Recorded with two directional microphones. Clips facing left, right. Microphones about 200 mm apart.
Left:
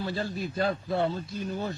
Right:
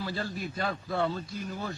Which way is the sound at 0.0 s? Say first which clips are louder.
Left 3 dB; 25° left (ahead or behind).